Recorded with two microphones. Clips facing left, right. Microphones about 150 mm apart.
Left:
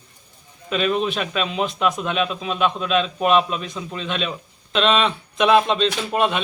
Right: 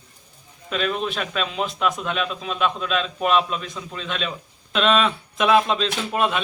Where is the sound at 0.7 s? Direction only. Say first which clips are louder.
Left 4 dB; 5° left (ahead or behind).